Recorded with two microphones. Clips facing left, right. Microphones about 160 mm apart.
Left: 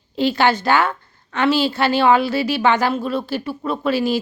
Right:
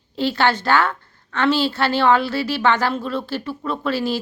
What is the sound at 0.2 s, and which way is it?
A woman's voice, 15° left (ahead or behind).